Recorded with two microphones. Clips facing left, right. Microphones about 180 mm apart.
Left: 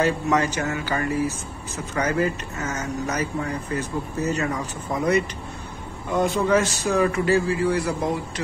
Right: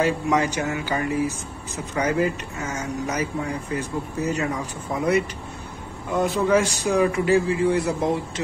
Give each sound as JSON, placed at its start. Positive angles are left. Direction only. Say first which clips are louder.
{"t": 0.0, "sound": "a man's voice", "louder": "even", "side_deg": -10}